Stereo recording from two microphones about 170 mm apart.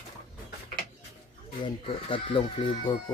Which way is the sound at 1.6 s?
30° left (ahead or behind).